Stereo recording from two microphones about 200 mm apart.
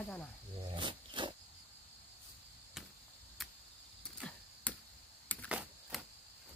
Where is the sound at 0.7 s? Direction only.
25° right (ahead or behind).